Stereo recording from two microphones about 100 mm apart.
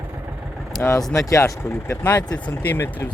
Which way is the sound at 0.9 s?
30° left (ahead or behind).